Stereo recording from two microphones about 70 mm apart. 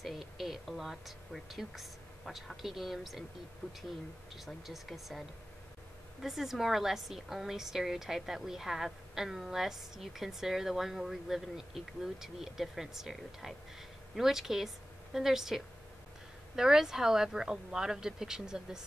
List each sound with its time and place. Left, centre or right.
0.0 s speech: centre
3.6 s speech: centre
4.5 s a woman's voice: centre
6.2 s a woman's voice: centre